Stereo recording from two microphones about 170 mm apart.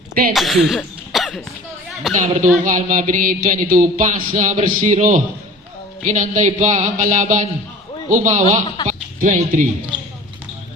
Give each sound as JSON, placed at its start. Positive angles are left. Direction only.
{"t": 0.3, "sound": "cough", "side_deg": 0}
{"t": 2.1, "sound": "a sound", "side_deg": -45}
{"t": 8.9, "sound": "speech", "side_deg": -45}